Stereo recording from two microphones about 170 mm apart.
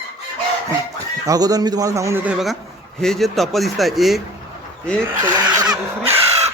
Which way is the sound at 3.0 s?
Centre (ahead or behind).